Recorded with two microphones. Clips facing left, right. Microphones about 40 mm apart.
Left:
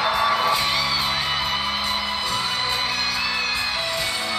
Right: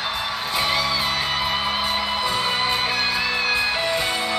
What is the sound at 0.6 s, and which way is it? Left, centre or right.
Music, centre.